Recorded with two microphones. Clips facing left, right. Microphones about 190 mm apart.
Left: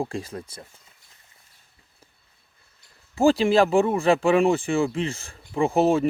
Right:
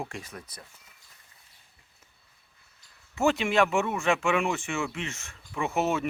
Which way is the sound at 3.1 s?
30° left (ahead or behind).